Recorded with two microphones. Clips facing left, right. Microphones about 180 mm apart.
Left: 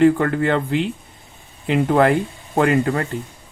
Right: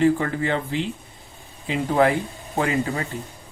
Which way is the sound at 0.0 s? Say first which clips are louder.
Left 5 dB; 60° left (ahead or behind).